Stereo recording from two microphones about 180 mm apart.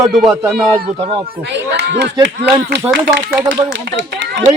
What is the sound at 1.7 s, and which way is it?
Speech, 70° right (ahead or behind).